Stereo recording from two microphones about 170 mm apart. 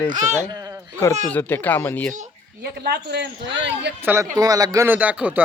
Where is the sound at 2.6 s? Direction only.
70° right (ahead or behind); by 3.9 s 90° right.